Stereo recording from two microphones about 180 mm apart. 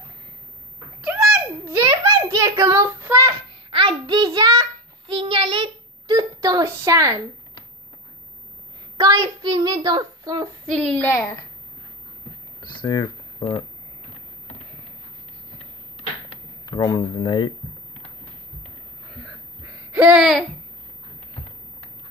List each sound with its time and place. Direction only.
1.7 s child singing: 15° right (ahead or behind)
3.7 s child singing: 25° right (ahead or behind)
8.9 s a woman's voice: 20° right (ahead or behind)
10.7 s a woman's voice: 5° left (ahead or behind)
12.7 s speech: 20° left (ahead or behind)
16.6 s speech: 20° left (ahead or behind)
19.9 s a sound: 5° right (ahead or behind)